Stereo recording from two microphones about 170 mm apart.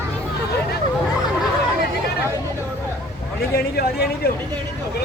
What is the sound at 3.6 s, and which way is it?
Speech, 65° left (ahead or behind).